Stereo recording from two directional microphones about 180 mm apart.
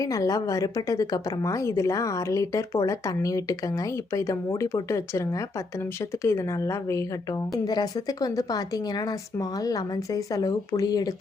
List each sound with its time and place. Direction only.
0.0 s a woman's voice: 20° left (ahead or behind)